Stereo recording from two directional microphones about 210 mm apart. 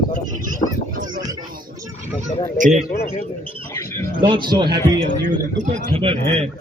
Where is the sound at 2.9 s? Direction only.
50° left (ahead or behind).